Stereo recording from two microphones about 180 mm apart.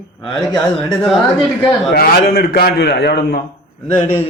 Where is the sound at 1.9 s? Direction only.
60° left (ahead or behind).